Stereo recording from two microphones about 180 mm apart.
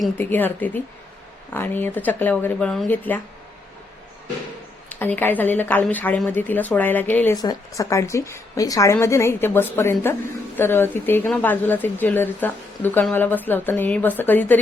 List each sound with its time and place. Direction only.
0.2 s a woman's voice: 10° left (ahead or behind)
4.9 s a woman's voice: 10° left (ahead or behind)